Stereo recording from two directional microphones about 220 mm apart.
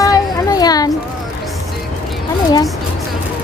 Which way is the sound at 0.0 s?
15° left (ahead or behind).